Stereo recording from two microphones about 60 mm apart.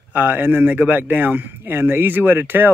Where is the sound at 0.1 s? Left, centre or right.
Right.